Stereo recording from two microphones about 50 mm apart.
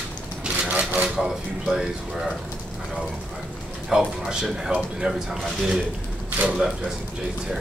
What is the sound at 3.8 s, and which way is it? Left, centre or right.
Speech, centre.